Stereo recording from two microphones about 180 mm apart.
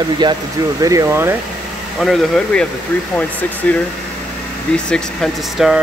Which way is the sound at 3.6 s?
10° left (ahead or behind).